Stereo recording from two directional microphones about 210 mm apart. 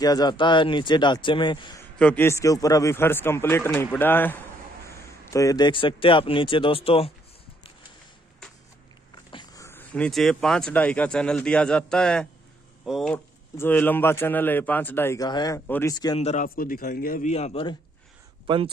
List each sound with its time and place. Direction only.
0.0 s speech: 20° left (ahead or behind)
2.0 s a man's voice: 5° left (ahead or behind); by 7.1 s 25° left (ahead or behind)
9.1 s a man's voice: 20° left (ahead or behind)
16.2 s speech: 30° left (ahead or behind)
16.4 s a man's voice: 45° left (ahead or behind)
17.3 s speech: 30° left (ahead or behind)
18.5 s speech: 25° right (ahead or behind)